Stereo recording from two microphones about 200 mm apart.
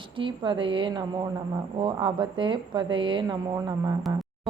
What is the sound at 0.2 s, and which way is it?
Speech, 25° right (ahead or behind).